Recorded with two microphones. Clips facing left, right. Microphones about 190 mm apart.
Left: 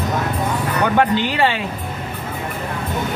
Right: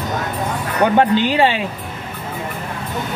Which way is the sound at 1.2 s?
15° right (ahead or behind).